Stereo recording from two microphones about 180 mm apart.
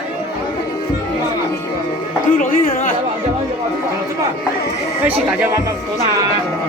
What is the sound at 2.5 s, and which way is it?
Speech, 50° left (ahead or behind).